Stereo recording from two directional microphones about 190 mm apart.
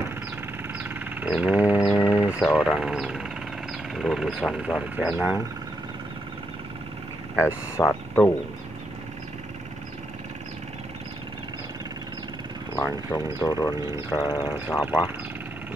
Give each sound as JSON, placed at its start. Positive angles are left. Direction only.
{"t": 0.8, "sound": "a sound", "side_deg": -10}
{"t": 2.0, "sound": "speech", "side_deg": -5}
{"t": 7.4, "sound": "speech", "side_deg": 10}
{"t": 12.7, "sound": "speech", "side_deg": 15}